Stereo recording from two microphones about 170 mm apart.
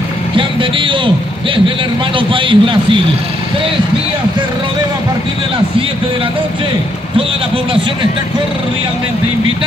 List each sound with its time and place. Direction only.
0.4 s a man's voice: 30° right (ahead or behind)